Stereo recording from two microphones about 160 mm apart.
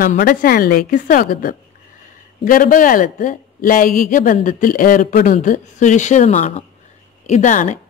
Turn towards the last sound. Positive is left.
turn(degrees=50)  # may be behind; listen again after turning